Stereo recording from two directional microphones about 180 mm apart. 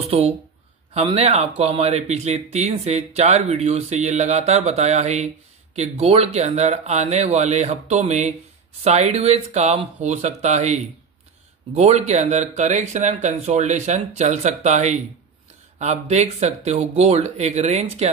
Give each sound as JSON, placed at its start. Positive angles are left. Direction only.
{"t": 0.1, "sound": "speech", "side_deg": -35}